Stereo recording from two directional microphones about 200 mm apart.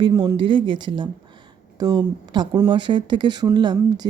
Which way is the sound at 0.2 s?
25° right (ahead or behind).